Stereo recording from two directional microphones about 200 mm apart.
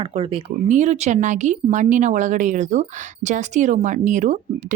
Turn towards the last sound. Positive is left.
turn(degrees=-35)  # may be behind; listen again after turning